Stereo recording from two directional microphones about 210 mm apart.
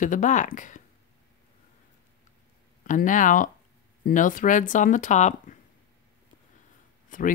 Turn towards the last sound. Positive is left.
turn(degrees=40)  # may be behind; listen again after turning